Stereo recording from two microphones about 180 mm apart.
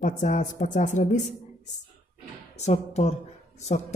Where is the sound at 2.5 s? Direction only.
40° left (ahead or behind).